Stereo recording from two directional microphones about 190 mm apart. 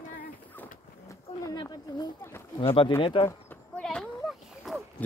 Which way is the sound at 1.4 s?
20° left (ahead or behind).